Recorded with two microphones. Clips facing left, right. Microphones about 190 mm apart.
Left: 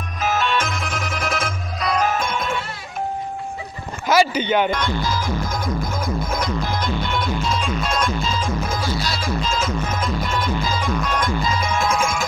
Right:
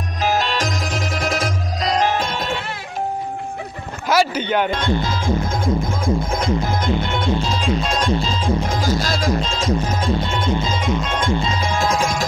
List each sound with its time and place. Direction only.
0.2 s music: 35° right (ahead or behind)
4.3 s a man's voice: 5° left (ahead or behind)
4.6 s music: 25° right (ahead or behind)
8.9 s music: 45° right (ahead or behind)
9.4 s music: 30° right (ahead or behind)